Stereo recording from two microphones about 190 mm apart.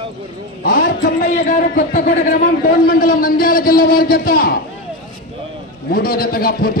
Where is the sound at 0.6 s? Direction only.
50° left (ahead or behind).